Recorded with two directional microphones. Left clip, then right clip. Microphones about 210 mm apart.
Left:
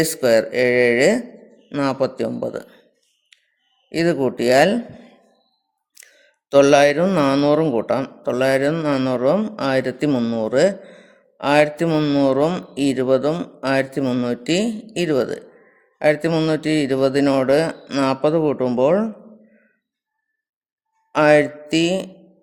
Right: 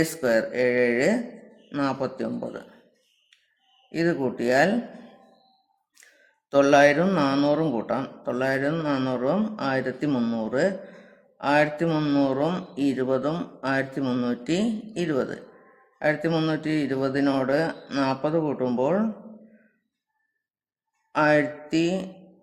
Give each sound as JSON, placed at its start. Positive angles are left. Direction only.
{"t": 0.0, "sound": "speech", "side_deg": 40}
{"t": 3.8, "sound": "speech", "side_deg": 45}
{"t": 6.5, "sound": "speech", "side_deg": 45}
{"t": 21.1, "sound": "a sound", "side_deg": 45}